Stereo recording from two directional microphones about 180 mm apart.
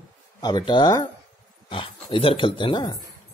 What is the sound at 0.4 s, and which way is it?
Speech, 25° left (ahead or behind).